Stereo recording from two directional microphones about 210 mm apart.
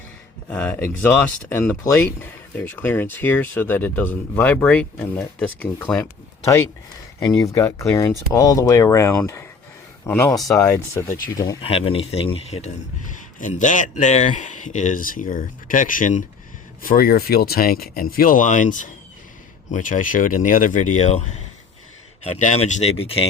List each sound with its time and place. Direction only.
0.5 s speech: 5° left (ahead or behind)
7.4 s speech: 15° left (ahead or behind)
11.6 s speech: 25° left (ahead or behind)